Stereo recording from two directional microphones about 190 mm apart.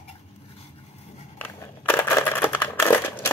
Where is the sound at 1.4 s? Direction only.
10° left (ahead or behind).